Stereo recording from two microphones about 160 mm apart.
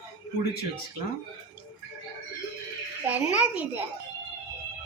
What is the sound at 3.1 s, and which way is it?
Speech, 10° right (ahead or behind).